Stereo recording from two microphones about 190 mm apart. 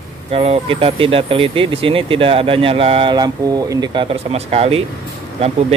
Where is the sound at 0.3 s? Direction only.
30° right (ahead or behind).